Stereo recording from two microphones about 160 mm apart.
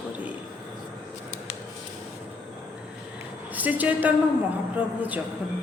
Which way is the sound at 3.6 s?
10° right (ahead or behind).